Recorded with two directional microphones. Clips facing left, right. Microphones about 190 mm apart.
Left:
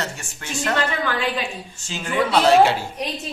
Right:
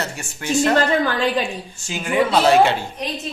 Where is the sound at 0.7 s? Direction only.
40° right (ahead or behind).